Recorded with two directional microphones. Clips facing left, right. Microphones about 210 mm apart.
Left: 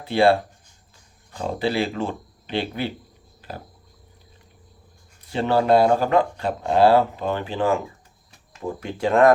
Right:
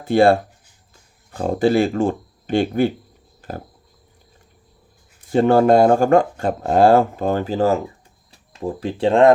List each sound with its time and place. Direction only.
0.0 s speech: 45° right (ahead or behind)
3.4 s a sound: 50° right (ahead or behind)
5.2 s speech: 45° right (ahead or behind); by 9.3 s 30° right (ahead or behind)